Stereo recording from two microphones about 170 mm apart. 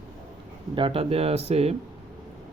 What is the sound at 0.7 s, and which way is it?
Speech, 30° right (ahead or behind).